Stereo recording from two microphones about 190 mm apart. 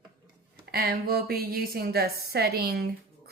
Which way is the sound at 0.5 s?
55° right (ahead or behind).